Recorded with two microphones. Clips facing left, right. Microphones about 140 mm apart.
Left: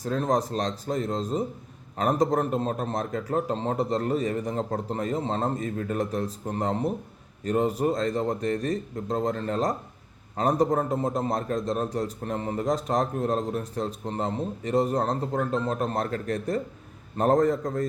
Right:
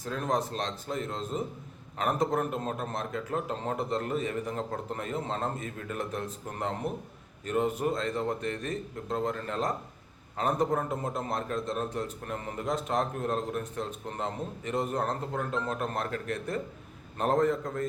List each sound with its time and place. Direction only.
0.0 s a man's voice: 40° left (ahead or behind)